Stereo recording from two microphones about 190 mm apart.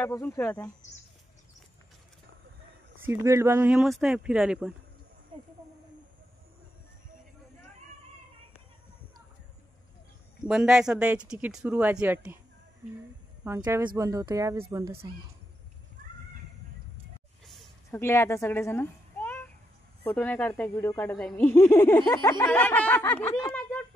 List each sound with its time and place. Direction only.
0.0 s speech: 10° left (ahead or behind)
3.0 s speech: 15° right (ahead or behind)
10.4 s speech: 5° right (ahead or behind)
13.6 s speech: 20° right (ahead or behind)
17.9 s a child's voice: 15° left (ahead or behind)